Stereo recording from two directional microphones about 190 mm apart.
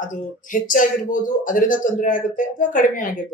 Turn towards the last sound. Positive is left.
turn(degrees=45)  # may be behind; listen again after turning